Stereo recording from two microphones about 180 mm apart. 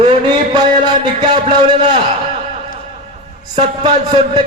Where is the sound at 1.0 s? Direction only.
25° right (ahead or behind).